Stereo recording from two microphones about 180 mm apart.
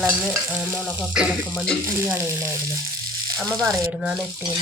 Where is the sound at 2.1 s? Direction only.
15° right (ahead or behind).